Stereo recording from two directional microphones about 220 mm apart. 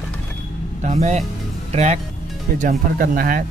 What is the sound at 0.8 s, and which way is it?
Speech, 30° right (ahead or behind).